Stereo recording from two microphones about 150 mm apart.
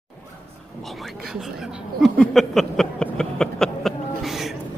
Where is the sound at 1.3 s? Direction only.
5° right (ahead or behind).